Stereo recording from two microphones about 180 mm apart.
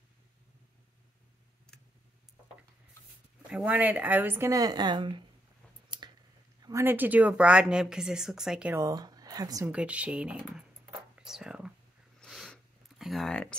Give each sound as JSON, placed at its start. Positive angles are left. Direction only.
{"t": 3.4, "sound": "speech", "side_deg": -5}
{"t": 5.9, "sound": "a sound", "side_deg": -25}
{"t": 6.6, "sound": "speech", "side_deg": -15}
{"t": 8.7, "sound": "speech", "side_deg": -20}
{"t": 9.7, "sound": "speech", "side_deg": -5}
{"t": 11.1, "sound": "whispering", "side_deg": -5}
{"t": 12.2, "sound": "snort", "side_deg": 0}
{"t": 13.0, "sound": "speech", "side_deg": 0}